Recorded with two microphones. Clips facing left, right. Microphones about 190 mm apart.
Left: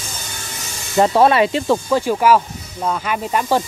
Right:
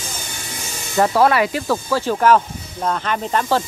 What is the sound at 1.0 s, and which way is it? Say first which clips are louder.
Speech: left 2 dB; 25° left (ahead or behind).